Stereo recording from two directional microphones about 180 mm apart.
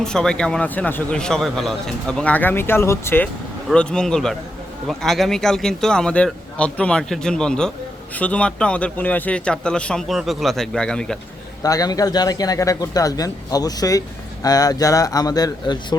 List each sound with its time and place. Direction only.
0.0 s a man's voice: 5° left (ahead or behind)
11.6 s speech: 20° left (ahead or behind)